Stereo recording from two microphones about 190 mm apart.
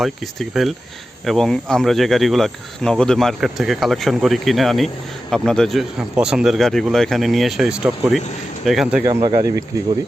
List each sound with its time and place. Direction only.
0.0 s speech: centre (ahead or behind)
9.0 s speech: 20° right (ahead or behind)